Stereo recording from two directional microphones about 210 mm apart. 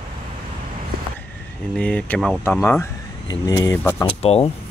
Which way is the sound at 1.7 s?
5° left (ahead or behind).